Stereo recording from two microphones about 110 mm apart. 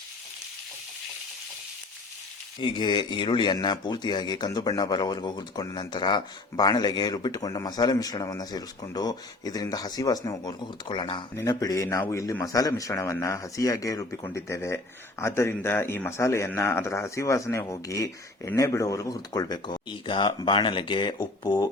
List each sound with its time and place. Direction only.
2.6 s speech: 45° left (ahead or behind)
11.3 s speech: 30° left (ahead or behind)